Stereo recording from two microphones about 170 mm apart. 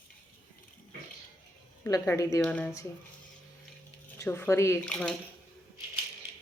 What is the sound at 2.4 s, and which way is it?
Speech, 10° left (ahead or behind).